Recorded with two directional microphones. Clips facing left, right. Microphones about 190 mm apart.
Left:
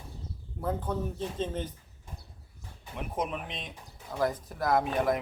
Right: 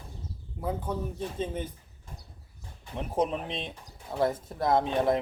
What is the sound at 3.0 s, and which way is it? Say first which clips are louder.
Speech: right 5 dB; 30° right (ahead or behind).